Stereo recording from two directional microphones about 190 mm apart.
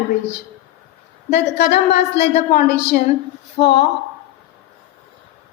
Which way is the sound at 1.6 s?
60° left (ahead or behind).